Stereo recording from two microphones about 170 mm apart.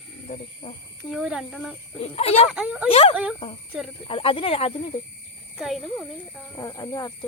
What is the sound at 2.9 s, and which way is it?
Speech, 35° left (ahead or behind).